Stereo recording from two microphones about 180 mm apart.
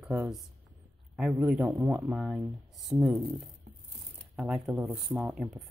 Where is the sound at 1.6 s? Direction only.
20° right (ahead or behind).